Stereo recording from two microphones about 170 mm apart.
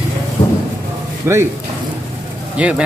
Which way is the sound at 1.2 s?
15° right (ahead or behind).